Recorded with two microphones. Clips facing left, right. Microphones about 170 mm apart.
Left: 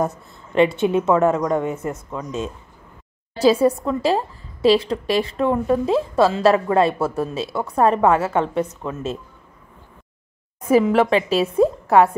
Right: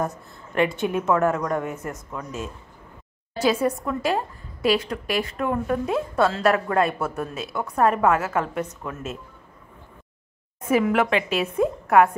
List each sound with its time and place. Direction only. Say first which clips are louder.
0.6 s a woman's voice: left 6 dB; 25° left (ahead or behind)
10.7 s a woman's voice: left 5 dB; 35° left (ahead or behind)